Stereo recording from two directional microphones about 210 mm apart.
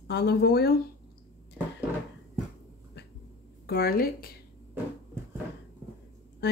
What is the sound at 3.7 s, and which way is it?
Speech, 45° left (ahead or behind).